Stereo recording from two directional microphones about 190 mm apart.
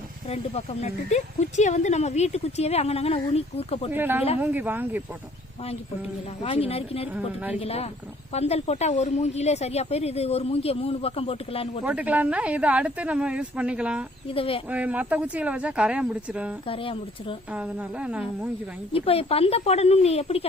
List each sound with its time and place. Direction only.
0.3 s speech: 35° left (ahead or behind)
3.9 s speech: 10° right (ahead or behind)
6.4 s speech: 30° left (ahead or behind)
7.1 s speech: 5° right (ahead or behind)
7.6 s speech: 30° left (ahead or behind)
11.9 s speech: 10° right (ahead or behind)
14.3 s speech: 30° left (ahead or behind)
14.7 s speech: 5° right (ahead or behind)
16.6 s speech: 30° left (ahead or behind)
17.5 s a woman's voice: 5° right (ahead or behind)
18.9 s speech: 30° left (ahead or behind)